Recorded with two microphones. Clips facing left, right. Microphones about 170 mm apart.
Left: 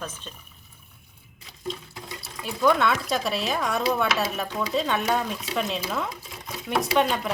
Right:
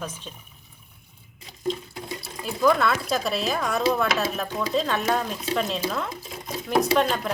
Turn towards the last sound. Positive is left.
turn(degrees=0)  # may be behind; listen again after turning